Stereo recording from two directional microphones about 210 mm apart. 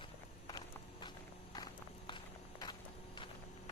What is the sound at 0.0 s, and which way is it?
Walk, 20° left (ahead or behind).